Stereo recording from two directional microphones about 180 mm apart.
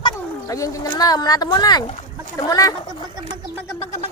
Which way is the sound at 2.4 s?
20° left (ahead or behind).